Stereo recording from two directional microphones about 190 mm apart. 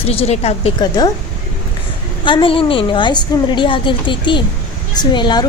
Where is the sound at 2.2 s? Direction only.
25° left (ahead or behind).